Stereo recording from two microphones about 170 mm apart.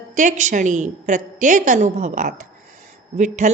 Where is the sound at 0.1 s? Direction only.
50° right (ahead or behind).